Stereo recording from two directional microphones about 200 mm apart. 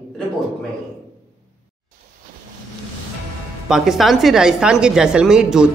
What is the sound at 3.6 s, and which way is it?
A woman's voice, centre (ahead or behind).